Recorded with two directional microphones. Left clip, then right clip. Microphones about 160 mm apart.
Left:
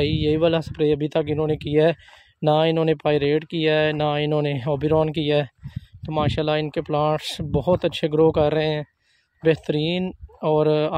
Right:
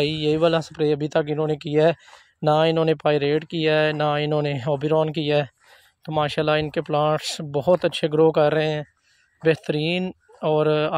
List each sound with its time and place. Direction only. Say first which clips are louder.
0.0 s speech: even; 20° left (ahead or behind)
6.0 s speech: right 1 dB; 10° left (ahead or behind)